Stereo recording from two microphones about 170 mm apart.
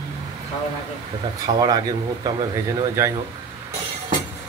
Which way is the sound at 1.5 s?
25° right (ahead or behind).